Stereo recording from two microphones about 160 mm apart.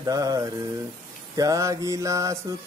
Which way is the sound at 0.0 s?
20° right (ahead or behind).